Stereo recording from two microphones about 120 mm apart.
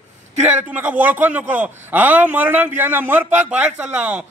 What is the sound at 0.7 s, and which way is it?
A man's voice, 15° right (ahead or behind).